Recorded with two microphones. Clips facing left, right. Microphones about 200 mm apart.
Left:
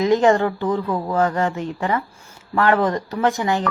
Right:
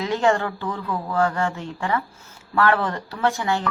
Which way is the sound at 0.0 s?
15° left (ahead or behind).